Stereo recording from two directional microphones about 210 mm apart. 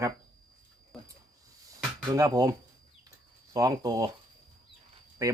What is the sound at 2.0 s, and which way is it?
Speech, 15° right (ahead or behind).